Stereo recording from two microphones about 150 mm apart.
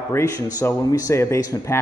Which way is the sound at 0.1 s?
20° left (ahead or behind).